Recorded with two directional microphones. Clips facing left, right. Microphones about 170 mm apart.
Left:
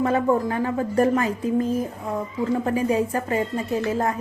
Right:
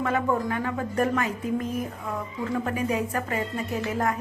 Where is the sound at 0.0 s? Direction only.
30° left (ahead or behind).